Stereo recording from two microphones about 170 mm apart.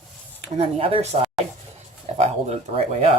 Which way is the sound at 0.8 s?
35° right (ahead or behind).